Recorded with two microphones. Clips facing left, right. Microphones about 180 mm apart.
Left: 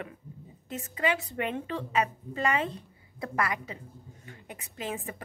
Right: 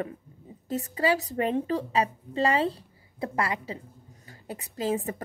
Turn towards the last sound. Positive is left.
turn(degrees=-35)  # may be behind; listen again after turning